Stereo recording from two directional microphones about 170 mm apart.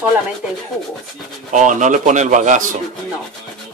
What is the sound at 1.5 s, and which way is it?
Speech, 45° right (ahead or behind).